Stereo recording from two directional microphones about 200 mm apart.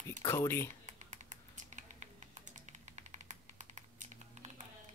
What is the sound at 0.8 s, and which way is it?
Typing, 40° right (ahead or behind).